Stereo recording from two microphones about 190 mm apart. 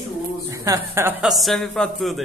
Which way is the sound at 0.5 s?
15° right (ahead or behind).